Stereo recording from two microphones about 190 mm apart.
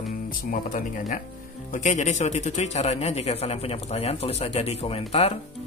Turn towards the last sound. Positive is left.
turn(degrees=35)  # may be behind; listen again after turning